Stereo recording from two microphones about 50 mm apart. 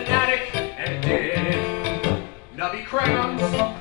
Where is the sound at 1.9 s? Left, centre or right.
Centre.